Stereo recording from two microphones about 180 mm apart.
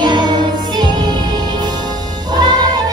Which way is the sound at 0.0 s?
25° right (ahead or behind).